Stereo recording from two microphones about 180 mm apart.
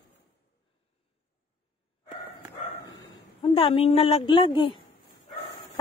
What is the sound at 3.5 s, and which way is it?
A woman's voice, 30° left (ahead or behind).